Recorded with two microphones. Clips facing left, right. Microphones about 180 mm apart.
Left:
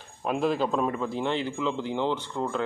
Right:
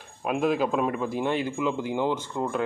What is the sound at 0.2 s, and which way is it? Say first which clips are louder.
Speech: right 1 dB; 5° right (ahead or behind).